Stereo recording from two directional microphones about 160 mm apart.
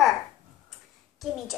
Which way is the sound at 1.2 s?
Centre (ahead or behind).